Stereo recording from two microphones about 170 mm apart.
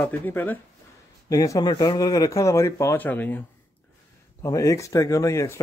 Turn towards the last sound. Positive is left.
turn(degrees=20)  # may be behind; listen again after turning